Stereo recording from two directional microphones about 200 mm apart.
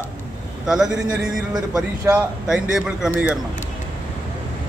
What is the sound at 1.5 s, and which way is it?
Speech, 15° right (ahead or behind).